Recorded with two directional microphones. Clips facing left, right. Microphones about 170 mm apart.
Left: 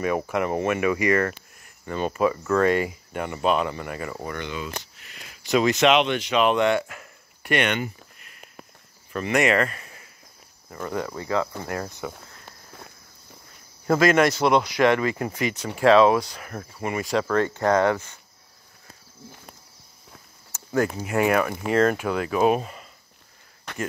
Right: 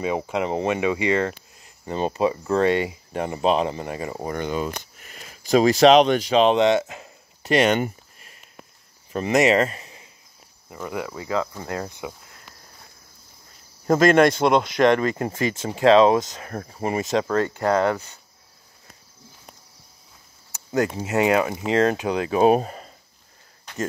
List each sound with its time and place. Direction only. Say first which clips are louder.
0.0 s speech: even; 20° right (ahead or behind)
4.4 s speech: right 6 dB; 45° right (ahead or behind)
9.1 s speech: right 3 dB; 30° right (ahead or behind)
10.7 s speech: left 1 dB; 10° right (ahead or behind)
13.8 s speech: right 3 dB; 40° right (ahead or behind)
14.4 s speech: right 1 dB; 25° right (ahead or behind)
14.9 s speech: right 3 dB; 40° right (ahead or behind)
15.1 s speech: right 2 dB; 30° right (ahead or behind)
16.5 s speech: right 3 dB; 35° right (ahead or behind)
20.5 s speech: right 1 dB; 20° right (ahead or behind); by 22.9 s 40° right (ahead or behind)